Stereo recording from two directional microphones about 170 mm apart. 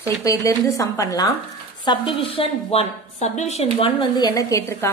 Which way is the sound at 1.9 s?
35° left (ahead or behind).